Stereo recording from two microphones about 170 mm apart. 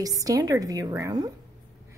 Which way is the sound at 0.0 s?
20° right (ahead or behind).